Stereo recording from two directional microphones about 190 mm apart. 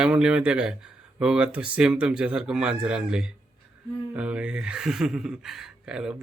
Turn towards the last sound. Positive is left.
turn(degrees=-5)  # may be behind; listen again after turning